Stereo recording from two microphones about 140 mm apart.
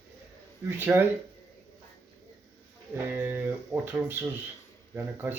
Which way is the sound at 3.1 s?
15° right (ahead or behind).